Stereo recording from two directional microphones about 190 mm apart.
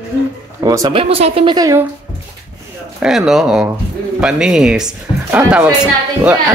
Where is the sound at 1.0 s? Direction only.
30° right (ahead or behind).